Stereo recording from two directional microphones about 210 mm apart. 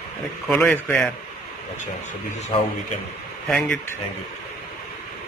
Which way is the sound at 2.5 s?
30° left (ahead or behind).